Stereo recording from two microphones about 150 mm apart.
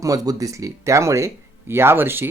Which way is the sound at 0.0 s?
25° right (ahead or behind).